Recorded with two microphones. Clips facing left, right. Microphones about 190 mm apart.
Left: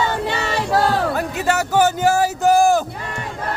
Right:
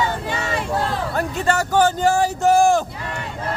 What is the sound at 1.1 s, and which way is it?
Speech, 5° left (ahead or behind).